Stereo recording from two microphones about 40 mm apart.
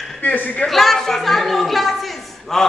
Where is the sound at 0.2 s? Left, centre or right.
Left.